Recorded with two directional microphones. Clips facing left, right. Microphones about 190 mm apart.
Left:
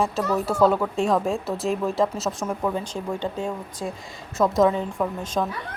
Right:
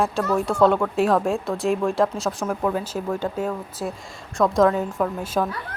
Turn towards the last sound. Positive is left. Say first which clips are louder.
# right 2 dB
turn(degrees=-5)  # may be behind; listen again after turning